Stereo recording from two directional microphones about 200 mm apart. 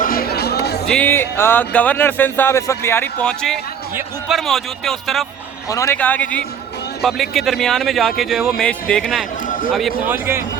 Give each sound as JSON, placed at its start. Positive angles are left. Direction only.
{"t": 0.0, "sound": "music", "side_deg": 45}
{"t": 0.9, "sound": "speech", "side_deg": 10}
{"t": 5.6, "sound": "speech", "side_deg": 15}
{"t": 9.5, "sound": "a sound", "side_deg": 45}
{"t": 10.1, "sound": "speech", "side_deg": -10}